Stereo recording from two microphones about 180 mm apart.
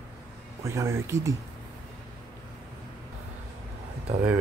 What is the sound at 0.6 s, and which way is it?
Speech, 15° right (ahead or behind).